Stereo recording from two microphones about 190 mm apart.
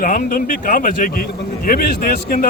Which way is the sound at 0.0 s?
45° left (ahead or behind).